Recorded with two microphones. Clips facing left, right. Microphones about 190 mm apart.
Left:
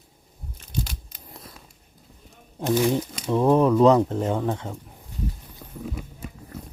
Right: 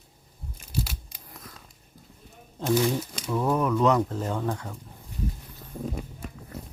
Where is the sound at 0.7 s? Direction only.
5° right (ahead or behind).